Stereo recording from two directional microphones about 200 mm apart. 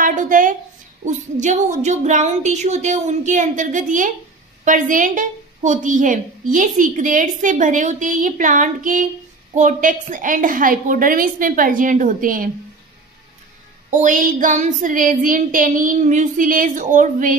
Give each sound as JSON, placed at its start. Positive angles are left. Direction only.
{"t": 0.0, "sound": "a sound", "side_deg": -40}
{"t": 1.0, "sound": "a woman's voice", "side_deg": -35}
{"t": 13.8, "sound": "a woman's voice", "side_deg": -40}